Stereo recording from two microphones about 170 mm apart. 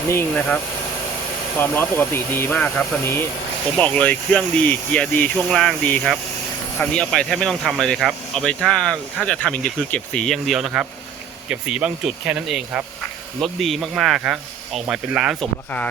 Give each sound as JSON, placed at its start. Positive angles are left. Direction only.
{"t": 0.1, "sound": "speech", "side_deg": 10}